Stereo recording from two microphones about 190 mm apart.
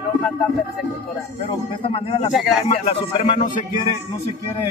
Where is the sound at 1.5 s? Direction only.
30° left (ahead or behind).